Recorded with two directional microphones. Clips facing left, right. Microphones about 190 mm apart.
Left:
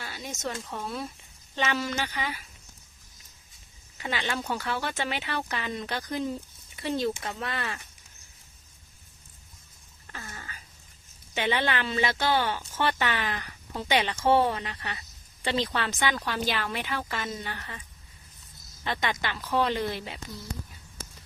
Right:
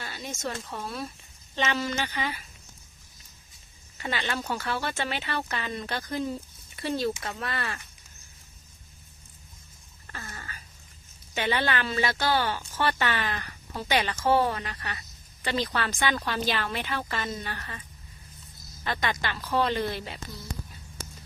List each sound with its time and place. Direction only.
0.0 s a sound: 5° left (ahead or behind)
0.4 s a woman's voice: 5° left (ahead or behind)
3.9 s a woman's voice: 15° left (ahead or behind)
10.1 s a sound: 10° left (ahead or behind)
11.3 s a woman's voice: 15° left (ahead or behind)
18.9 s a woman's voice: 20° left (ahead or behind)